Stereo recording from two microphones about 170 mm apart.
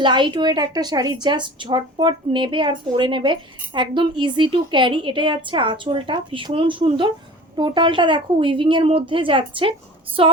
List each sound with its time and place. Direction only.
0.0 s a woman's voice: 25° right (ahead or behind)
10.2 s female singing: 35° right (ahead or behind)